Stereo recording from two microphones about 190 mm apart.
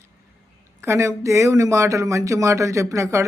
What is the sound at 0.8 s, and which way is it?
Speech, 15° right (ahead or behind).